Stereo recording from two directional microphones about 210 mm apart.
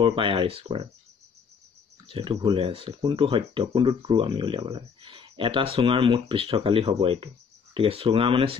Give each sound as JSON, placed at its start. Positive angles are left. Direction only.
{"t": 0.0, "sound": "speech", "side_deg": -25}
{"t": 2.0, "sound": "speech", "side_deg": -25}